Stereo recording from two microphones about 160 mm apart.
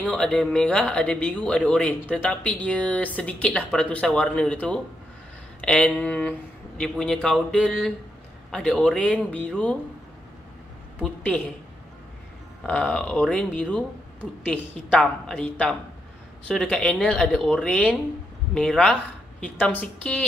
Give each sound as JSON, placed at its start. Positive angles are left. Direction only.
{"t": 0.1, "sound": "speech", "side_deg": 5}
{"t": 11.0, "sound": "speech", "side_deg": 10}
{"t": 12.6, "sound": "speech", "side_deg": 5}